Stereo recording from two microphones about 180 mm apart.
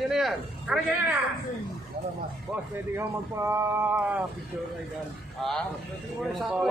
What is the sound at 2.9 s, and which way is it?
A man's voice, 15° right (ahead or behind).